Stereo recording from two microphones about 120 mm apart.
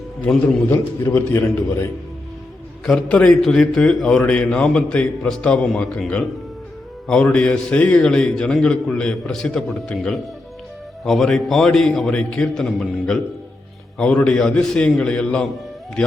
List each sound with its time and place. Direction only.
0.2 s a man's voice: 15° left (ahead or behind)
2.8 s a man's voice: 5° left (ahead or behind)